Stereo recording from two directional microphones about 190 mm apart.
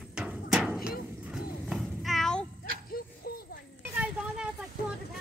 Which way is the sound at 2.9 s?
50° left (ahead or behind).